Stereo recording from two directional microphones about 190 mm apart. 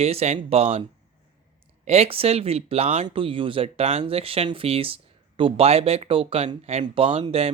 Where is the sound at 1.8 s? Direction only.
35° right (ahead or behind).